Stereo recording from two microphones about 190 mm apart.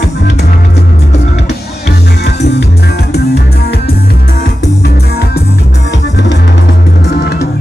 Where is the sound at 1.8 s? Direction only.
65° left (ahead or behind).